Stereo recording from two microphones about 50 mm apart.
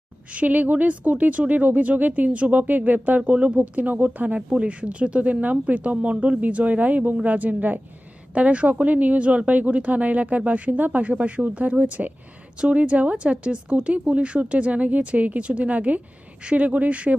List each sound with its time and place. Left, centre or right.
0.3 s speech: right